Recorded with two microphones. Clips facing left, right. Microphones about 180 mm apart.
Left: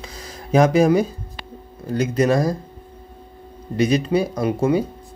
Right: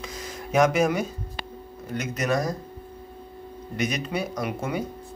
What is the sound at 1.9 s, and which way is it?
Speech, 30° left (ahead or behind).